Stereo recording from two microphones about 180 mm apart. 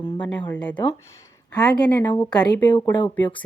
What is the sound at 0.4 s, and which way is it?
A woman's voice, 5° left (ahead or behind).